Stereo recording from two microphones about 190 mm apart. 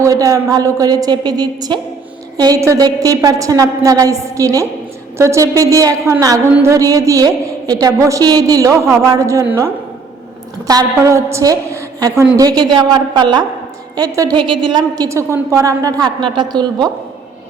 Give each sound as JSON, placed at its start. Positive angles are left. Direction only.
{"t": 0.0, "sound": "a woman's voice", "side_deg": -15}
{"t": 10.7, "sound": "a woman's voice", "side_deg": -20}